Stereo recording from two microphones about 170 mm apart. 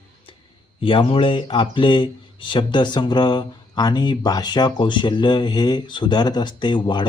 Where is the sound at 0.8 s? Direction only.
30° left (ahead or behind).